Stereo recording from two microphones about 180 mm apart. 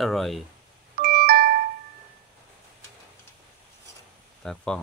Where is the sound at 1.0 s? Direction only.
55° right (ahead or behind).